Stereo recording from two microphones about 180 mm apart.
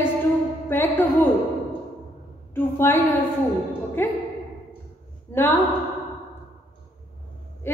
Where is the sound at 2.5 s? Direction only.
15° left (ahead or behind).